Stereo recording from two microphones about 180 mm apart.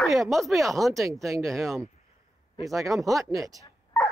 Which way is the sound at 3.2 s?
20° right (ahead or behind).